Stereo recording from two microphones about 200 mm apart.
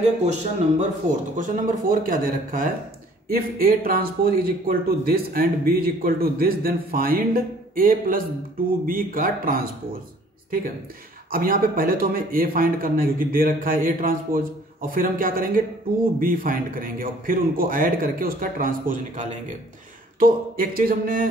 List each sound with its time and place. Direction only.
0.2 s a man's voice: 35° right (ahead or behind)
11.3 s a man's voice: 45° right (ahead or behind)